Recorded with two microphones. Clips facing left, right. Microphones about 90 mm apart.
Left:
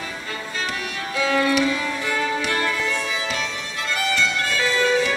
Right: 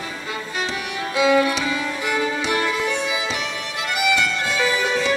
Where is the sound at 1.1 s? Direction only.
15° right (ahead or behind).